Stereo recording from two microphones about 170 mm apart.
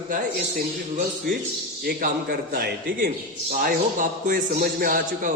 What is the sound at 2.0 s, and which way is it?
Speech, 65° right (ahead or behind).